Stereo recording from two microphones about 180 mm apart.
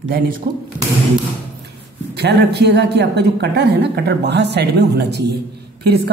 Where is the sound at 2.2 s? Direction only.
70° right (ahead or behind).